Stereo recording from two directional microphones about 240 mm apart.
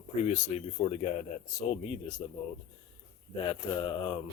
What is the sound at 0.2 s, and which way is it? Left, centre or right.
Speech, left.